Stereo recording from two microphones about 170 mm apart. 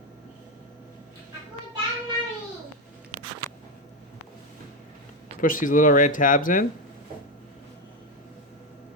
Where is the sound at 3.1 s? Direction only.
50° right (ahead or behind).